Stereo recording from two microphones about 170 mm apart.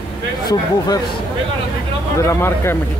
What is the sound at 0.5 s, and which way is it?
Speech, 25° left (ahead or behind).